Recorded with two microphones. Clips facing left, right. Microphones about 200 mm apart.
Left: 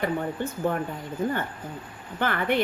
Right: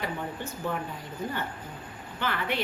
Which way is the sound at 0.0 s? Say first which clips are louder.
Left 7 dB; 50° left (ahead or behind).